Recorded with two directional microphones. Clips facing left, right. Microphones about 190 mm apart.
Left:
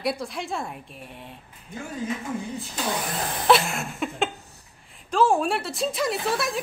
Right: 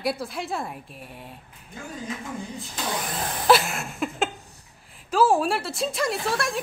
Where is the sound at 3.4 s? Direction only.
Centre (ahead or behind).